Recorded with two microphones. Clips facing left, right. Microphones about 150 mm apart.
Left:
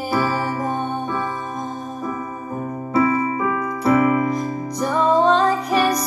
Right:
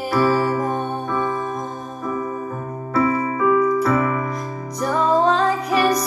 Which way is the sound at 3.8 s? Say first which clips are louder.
Left 3 dB; 20° left (ahead or behind).